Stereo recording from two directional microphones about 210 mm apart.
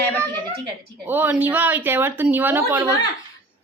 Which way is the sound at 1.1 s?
10° right (ahead or behind).